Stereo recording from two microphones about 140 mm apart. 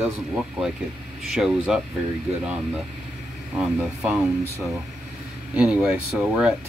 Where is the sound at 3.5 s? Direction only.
10° right (ahead or behind).